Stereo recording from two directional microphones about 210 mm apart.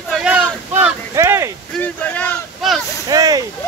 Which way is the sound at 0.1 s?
5° right (ahead or behind).